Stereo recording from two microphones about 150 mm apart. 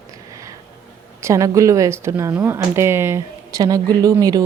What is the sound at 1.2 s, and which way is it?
Speech, 20° right (ahead or behind).